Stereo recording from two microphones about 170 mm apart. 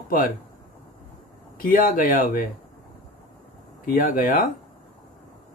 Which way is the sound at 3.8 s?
55° left (ahead or behind).